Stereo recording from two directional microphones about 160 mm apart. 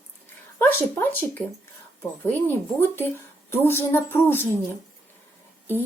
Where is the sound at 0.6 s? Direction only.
15° left (ahead or behind).